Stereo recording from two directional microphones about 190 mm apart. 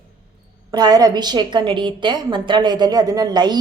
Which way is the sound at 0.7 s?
20° right (ahead or behind).